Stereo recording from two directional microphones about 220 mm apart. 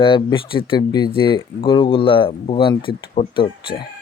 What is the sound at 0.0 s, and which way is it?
Speech, 20° left (ahead or behind).